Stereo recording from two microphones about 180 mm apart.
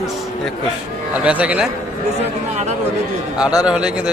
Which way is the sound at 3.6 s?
5° right (ahead or behind).